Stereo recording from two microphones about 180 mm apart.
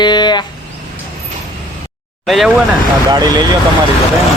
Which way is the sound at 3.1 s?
20° right (ahead or behind).